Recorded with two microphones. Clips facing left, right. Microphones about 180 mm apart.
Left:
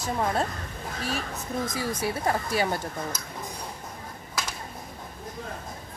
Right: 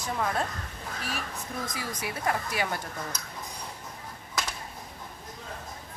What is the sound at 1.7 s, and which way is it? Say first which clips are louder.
A woman's voice: left 6 dB; 25° left (ahead or behind).